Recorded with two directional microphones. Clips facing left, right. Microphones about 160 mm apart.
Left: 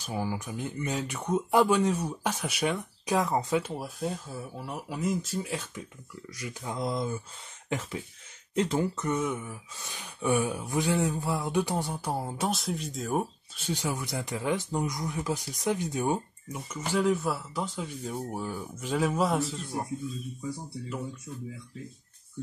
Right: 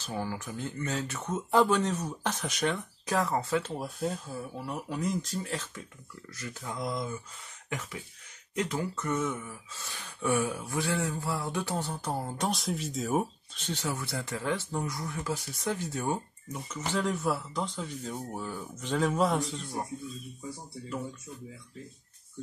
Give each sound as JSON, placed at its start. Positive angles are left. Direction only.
{"t": 0.0, "sound": "speech", "side_deg": 10}
{"t": 3.7, "sound": "speech", "side_deg": 0}
{"t": 8.5, "sound": "speech", "side_deg": 25}